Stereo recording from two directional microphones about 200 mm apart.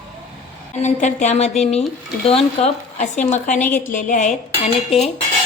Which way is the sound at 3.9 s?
40° left (ahead or behind).